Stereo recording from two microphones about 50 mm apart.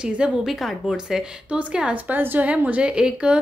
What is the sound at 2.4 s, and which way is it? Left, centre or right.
Speech, right.